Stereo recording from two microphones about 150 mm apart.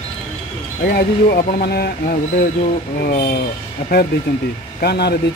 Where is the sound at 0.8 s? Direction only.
90° left.